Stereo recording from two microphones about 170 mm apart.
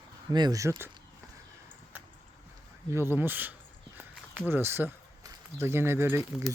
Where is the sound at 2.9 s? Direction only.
15° right (ahead or behind).